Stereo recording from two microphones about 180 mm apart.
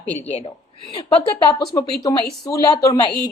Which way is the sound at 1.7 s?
20° left (ahead or behind).